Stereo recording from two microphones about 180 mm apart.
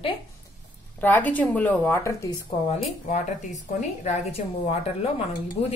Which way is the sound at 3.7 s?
40° left (ahead or behind).